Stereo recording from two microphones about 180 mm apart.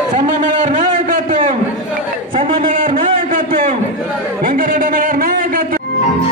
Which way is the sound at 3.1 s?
50° right (ahead or behind).